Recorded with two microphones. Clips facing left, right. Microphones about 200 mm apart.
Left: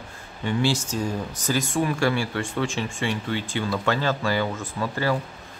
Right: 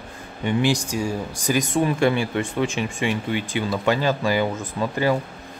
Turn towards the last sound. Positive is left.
turn(degrees=-15)  # may be behind; listen again after turning